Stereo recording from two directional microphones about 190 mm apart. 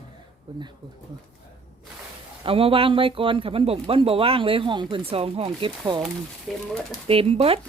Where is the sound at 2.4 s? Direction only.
30° right (ahead or behind).